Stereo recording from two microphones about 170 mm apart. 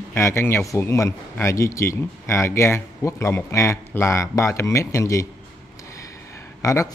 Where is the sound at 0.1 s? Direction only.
15° left (ahead or behind).